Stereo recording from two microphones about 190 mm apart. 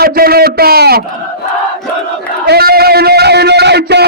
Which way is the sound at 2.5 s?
55° right (ahead or behind).